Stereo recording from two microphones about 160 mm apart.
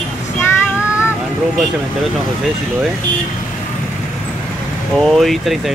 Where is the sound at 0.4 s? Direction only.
15° left (ahead or behind).